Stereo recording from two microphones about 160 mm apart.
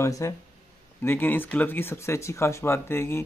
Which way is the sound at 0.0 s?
20° left (ahead or behind).